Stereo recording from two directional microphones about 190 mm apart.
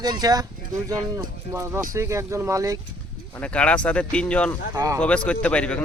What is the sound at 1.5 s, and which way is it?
Speech, 15° right (ahead or behind).